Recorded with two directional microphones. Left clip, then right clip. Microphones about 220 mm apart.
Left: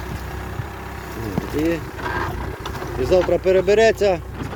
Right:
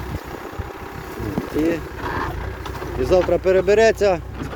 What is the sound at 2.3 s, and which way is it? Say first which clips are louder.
Vehicle: left 1 dB; 45° left (ahead or behind).